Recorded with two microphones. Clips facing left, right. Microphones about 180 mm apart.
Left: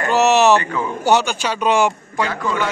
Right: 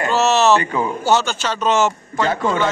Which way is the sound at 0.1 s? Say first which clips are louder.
Left 2 dB; 15° left (ahead or behind).